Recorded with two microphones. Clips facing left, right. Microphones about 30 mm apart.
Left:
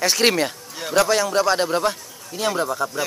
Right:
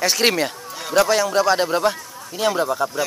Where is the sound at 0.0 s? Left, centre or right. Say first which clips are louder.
Even; centre.